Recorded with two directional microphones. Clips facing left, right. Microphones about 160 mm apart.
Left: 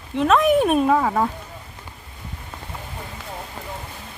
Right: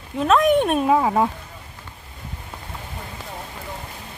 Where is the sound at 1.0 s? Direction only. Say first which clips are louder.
Right 1 dB; 15° right (ahead or behind).